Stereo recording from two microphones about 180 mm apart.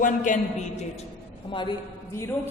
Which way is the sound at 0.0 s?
45° left (ahead or behind).